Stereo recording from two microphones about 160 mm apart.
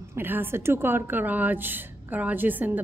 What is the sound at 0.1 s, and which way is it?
A woman's voice, 15° right (ahead or behind).